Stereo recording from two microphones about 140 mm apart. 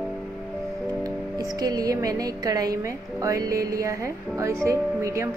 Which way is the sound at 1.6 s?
25° right (ahead or behind).